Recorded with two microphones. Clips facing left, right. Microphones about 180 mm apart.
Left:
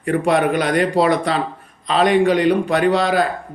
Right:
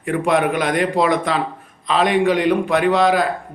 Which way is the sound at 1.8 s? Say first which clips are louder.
Left 2 dB; centre (ahead or behind).